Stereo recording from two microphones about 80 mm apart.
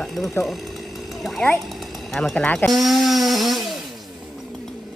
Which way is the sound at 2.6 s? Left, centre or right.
Centre.